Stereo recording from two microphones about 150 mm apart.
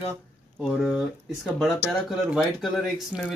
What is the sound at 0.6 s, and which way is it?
Speech, centre (ahead or behind).